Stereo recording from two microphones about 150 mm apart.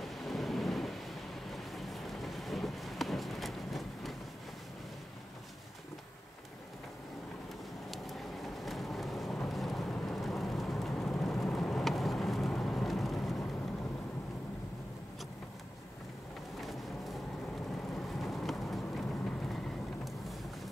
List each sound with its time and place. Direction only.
0.0 s thunder: centre (ahead or behind)
7.9 s vehicle: centre (ahead or behind)
16.6 s vehicle: centre (ahead or behind)